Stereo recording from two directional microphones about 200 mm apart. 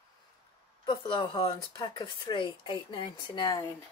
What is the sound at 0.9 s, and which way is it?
Speech, 25° left (ahead or behind).